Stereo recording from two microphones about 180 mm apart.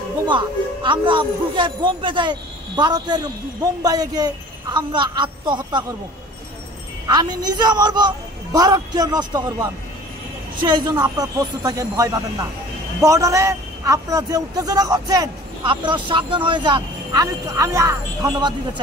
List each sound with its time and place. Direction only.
0.3 s a man's voice: 25° right (ahead or behind)
7.1 s a man's voice: 25° right (ahead or behind)